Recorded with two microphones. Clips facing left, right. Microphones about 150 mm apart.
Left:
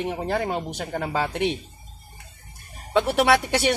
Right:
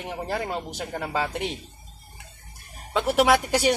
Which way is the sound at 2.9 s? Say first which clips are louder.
Left 1 dB; 5° right (ahead or behind).